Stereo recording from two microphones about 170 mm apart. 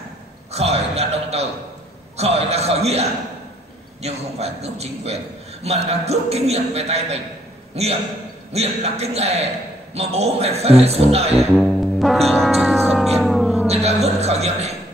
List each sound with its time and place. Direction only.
0.5 s a man's voice: 40° right (ahead or behind)
11.5 s music: centre (ahead or behind)
13.7 s a man's voice: 40° right (ahead or behind)